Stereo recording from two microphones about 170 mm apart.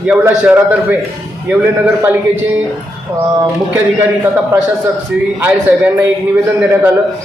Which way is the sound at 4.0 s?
10° right (ahead or behind).